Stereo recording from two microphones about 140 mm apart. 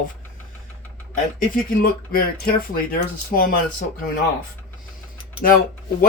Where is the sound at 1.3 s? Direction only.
85° left.